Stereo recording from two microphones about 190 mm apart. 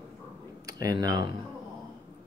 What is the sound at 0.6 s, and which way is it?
Speech, 20° right (ahead or behind).